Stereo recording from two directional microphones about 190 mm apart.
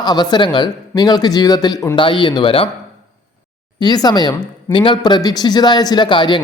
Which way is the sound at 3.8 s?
20° left (ahead or behind).